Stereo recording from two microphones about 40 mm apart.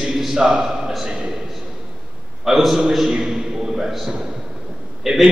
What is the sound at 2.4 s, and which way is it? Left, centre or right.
A man's voice, centre.